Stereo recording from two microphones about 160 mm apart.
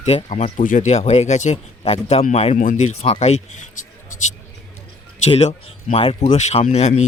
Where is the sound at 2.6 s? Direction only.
50° left (ahead or behind).